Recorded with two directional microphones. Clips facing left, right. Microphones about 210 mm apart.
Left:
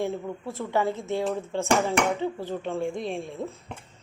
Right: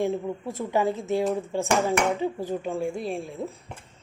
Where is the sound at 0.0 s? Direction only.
15° right (ahead or behind).